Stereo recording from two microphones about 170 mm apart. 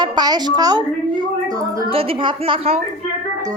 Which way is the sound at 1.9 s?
35° right (ahead or behind).